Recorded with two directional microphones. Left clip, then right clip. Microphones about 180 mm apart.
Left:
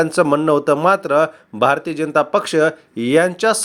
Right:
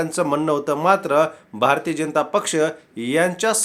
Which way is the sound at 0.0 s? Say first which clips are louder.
Left 6 dB; 30° left (ahead or behind).